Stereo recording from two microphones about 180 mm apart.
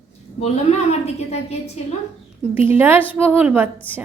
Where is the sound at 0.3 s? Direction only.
35° left (ahead or behind).